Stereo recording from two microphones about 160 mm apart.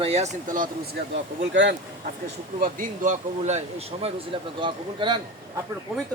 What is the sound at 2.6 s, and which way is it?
Speech, 55° right (ahead or behind).